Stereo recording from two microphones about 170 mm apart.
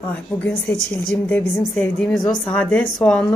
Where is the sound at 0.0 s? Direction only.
10° left (ahead or behind).